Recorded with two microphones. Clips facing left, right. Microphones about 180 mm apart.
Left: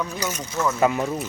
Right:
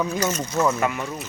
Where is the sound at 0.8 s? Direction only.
30° left (ahead or behind).